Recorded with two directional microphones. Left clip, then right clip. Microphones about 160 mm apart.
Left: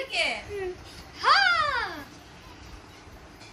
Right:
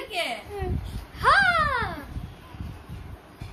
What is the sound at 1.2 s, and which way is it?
Babbling, 45° right (ahead or behind).